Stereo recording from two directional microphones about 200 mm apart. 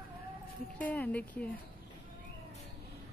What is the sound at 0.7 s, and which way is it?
Speech, 5° left (ahead or behind).